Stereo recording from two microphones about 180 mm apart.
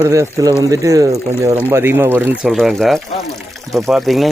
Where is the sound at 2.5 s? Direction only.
Centre (ahead or behind).